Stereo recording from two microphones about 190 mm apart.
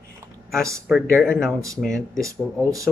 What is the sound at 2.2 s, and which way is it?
Speech, 15° right (ahead or behind).